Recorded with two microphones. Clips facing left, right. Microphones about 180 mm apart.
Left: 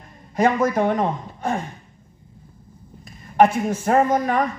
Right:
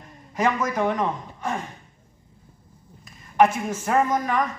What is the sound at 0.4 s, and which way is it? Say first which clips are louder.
Speech: left 5 dB; 30° left (ahead or behind).